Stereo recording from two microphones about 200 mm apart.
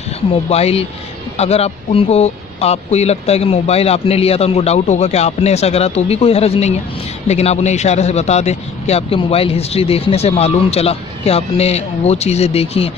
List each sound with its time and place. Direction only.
0.5 s a man's voice: 30° left (ahead or behind)